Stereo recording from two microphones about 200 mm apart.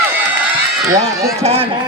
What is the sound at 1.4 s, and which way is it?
Speech, 30° right (ahead or behind).